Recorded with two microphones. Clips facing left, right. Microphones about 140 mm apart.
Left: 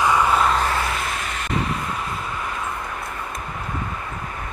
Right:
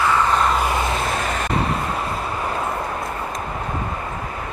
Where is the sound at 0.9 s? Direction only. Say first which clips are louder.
Right 4 dB; 30° right (ahead or behind).